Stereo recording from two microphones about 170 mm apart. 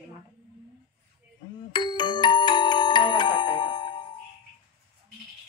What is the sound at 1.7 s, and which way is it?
Music, 25° left (ahead or behind).